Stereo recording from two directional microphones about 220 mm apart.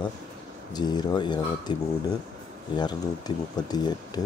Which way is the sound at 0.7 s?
20° left (ahead or behind).